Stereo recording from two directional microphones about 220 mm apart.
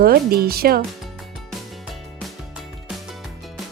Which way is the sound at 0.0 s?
45° right (ahead or behind).